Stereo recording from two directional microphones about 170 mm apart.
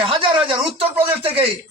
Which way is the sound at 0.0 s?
30° right (ahead or behind).